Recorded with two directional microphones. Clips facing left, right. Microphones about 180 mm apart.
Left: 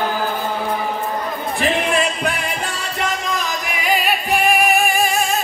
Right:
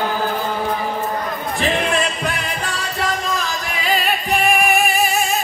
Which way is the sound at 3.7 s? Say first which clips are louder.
Left 1 dB; 10° left (ahead or behind).